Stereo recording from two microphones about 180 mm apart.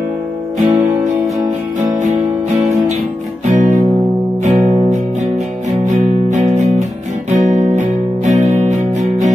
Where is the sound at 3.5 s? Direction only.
45° right (ahead or behind).